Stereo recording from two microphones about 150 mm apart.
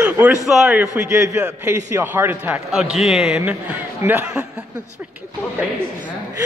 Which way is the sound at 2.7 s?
Centre (ahead or behind).